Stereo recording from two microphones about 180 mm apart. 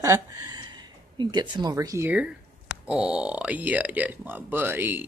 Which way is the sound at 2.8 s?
5° right (ahead or behind).